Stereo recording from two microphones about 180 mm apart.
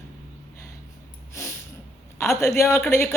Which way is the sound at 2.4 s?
15° left (ahead or behind).